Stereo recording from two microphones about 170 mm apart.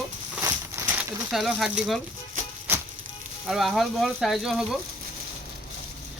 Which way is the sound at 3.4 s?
Centre (ahead or behind).